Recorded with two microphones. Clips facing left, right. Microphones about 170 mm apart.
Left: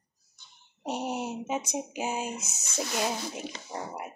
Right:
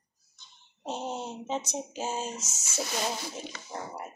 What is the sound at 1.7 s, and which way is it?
Speech, 15° left (ahead or behind).